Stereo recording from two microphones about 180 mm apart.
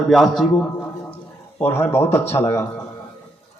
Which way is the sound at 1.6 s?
15° left (ahead or behind).